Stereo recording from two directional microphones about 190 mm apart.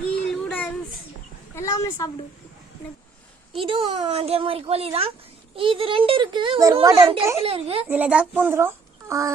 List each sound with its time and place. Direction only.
0.2 s child singing: 5° left (ahead or behind)
1.5 s a sound: 15° left (ahead or behind)
3.5 s speech: 30° right (ahead or behind)
7.9 s speech: 10° right (ahead or behind)